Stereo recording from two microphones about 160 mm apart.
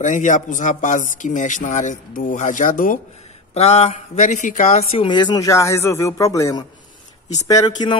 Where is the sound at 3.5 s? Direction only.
40° left (ahead or behind).